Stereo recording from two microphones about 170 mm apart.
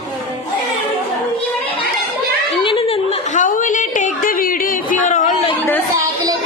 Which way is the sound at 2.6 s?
30° left (ahead or behind).